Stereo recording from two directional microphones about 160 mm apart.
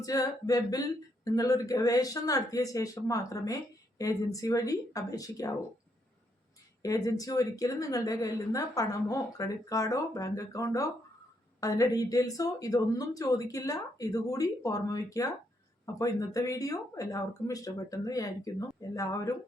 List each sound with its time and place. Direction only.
0.0 s speech: 20° left (ahead or behind)
6.8 s speech: 20° left (ahead or behind)